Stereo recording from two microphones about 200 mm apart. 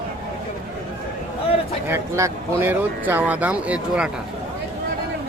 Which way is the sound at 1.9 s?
15° right (ahead or behind).